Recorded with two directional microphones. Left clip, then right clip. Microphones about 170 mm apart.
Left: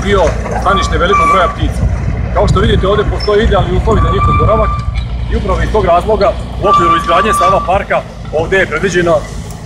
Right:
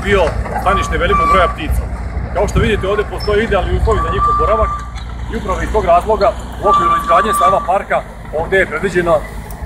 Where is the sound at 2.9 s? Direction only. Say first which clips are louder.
Left 4 dB; 20° left (ahead or behind).